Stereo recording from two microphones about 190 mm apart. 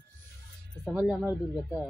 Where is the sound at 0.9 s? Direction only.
5° right (ahead or behind).